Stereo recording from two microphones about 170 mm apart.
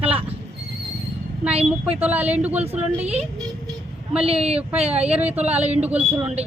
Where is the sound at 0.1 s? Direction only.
35° right (ahead or behind).